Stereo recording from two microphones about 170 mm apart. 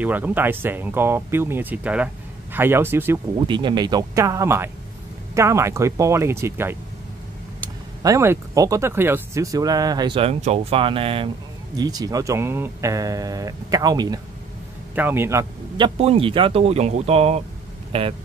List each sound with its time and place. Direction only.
0.0 s speech: 10° right (ahead or behind)
3.4 s speech: 25° right (ahead or behind)
8.0 s speech: 15° right (ahead or behind)
15.0 s speech: 15° right (ahead or behind)
15.8 s speech: 35° right (ahead or behind)